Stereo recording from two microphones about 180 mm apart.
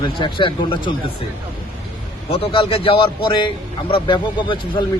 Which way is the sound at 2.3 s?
30° left (ahead or behind).